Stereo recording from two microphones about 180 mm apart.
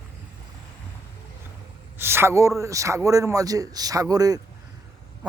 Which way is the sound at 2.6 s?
15° right (ahead or behind).